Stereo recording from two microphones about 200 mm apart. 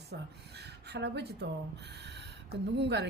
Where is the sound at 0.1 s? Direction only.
55° right (ahead or behind).